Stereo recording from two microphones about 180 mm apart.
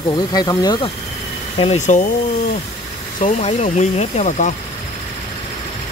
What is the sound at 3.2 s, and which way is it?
Speech, 35° left (ahead or behind).